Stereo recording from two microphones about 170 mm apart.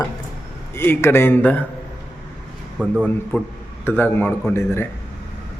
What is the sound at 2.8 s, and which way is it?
A man's voice, 5° left (ahead or behind).